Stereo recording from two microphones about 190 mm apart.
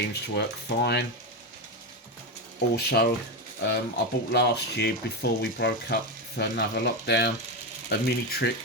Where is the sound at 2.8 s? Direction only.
60° left (ahead or behind).